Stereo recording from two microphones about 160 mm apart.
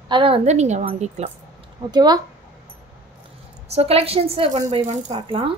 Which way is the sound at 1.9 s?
25° right (ahead or behind).